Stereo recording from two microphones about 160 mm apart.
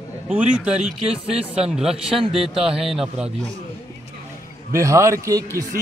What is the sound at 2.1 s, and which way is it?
Speech, 35° right (ahead or behind).